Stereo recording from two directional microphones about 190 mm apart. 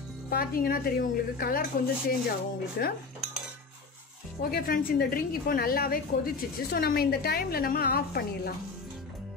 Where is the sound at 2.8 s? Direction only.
55° left (ahead or behind).